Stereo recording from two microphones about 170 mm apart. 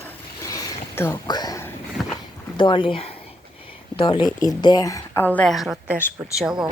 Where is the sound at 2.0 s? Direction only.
Centre (ahead or behind).